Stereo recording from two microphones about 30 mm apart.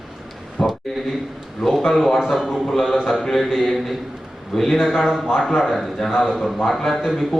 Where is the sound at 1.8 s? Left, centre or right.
Centre.